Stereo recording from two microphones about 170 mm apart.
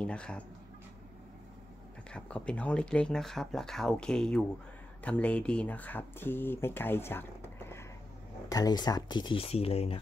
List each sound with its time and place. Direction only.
0.0 s speech: 5° left (ahead or behind)
2.0 s speech: 5° left (ahead or behind); by 9.9 s 35° left (ahead or behind)